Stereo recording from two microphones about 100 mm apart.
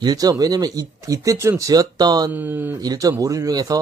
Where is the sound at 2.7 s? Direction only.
40° right (ahead or behind).